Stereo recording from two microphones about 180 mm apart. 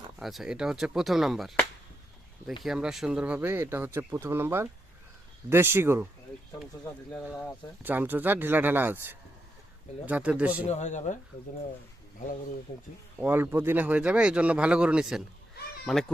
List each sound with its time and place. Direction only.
0.2 s speech: centre (ahead or behind)
2.6 s speech: 5° right (ahead or behind)
7.3 s speech: 5° right (ahead or behind)
10.7 s speech: 40° left (ahead or behind)
13.1 s speech: 10° right (ahead or behind)